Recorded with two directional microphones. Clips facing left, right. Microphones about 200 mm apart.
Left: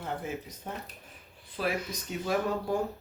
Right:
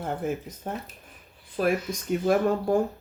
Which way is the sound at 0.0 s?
50° right (ahead or behind).